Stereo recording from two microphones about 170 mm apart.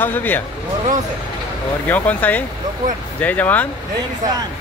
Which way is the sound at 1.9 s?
10° left (ahead or behind).